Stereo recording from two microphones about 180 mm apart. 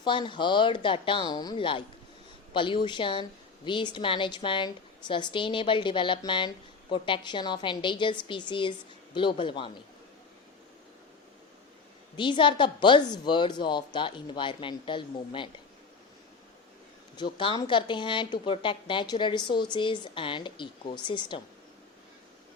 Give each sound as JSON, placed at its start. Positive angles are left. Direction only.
{"t": 0.0, "sound": "a woman's voice", "side_deg": 25}
{"t": 12.1, "sound": "a woman's voice", "side_deg": 25}
{"t": 17.3, "sound": "a woman's voice", "side_deg": 25}